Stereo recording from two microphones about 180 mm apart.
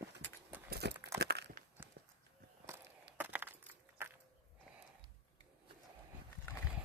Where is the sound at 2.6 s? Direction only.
15° right (ahead or behind).